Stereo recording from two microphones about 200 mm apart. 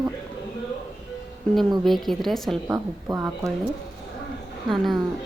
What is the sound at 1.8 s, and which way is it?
Speech, centre (ahead or behind).